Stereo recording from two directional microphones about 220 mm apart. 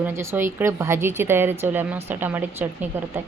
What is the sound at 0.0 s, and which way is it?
Speech, 10° right (ahead or behind).